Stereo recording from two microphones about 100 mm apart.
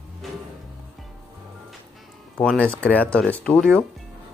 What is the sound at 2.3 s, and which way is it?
Speech, 10° left (ahead or behind).